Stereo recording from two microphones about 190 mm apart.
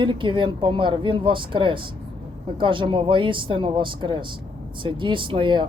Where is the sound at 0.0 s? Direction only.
25° right (ahead or behind).